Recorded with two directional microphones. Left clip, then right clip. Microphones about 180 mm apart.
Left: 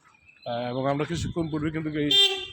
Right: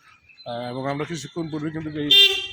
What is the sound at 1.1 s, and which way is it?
Speech, 45° left (ahead or behind).